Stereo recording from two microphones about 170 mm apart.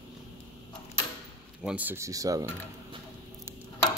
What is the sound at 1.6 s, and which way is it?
Speech, 5° right (ahead or behind).